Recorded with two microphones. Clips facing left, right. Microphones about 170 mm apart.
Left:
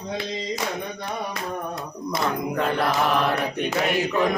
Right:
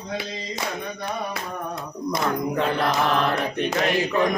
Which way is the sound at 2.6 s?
Centre (ahead or behind).